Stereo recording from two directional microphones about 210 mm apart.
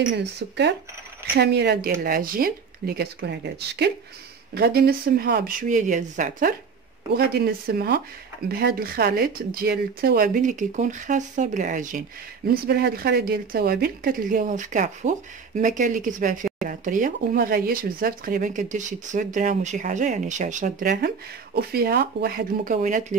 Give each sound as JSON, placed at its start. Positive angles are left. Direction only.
{"t": 0.1, "sound": "speech", "side_deg": -55}
{"t": 7.2, "sound": "speech", "side_deg": -45}
{"t": 12.4, "sound": "speech", "side_deg": -50}
{"t": 21.5, "sound": "speech", "side_deg": -50}